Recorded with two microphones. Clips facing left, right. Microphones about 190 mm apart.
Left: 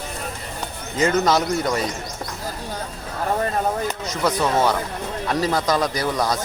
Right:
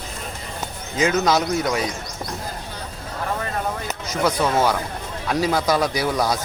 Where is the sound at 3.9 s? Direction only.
Centre (ahead or behind).